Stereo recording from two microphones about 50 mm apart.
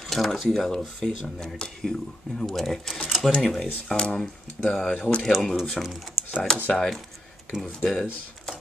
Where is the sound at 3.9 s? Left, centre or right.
Left.